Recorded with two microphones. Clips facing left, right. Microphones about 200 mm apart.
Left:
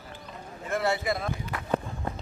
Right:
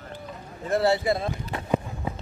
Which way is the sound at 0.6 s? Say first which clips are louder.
Right 5 dB; 35° right (ahead or behind).